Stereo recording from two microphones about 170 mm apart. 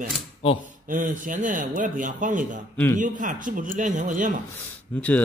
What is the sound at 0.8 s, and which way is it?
A man's voice, 50° right (ahead or behind).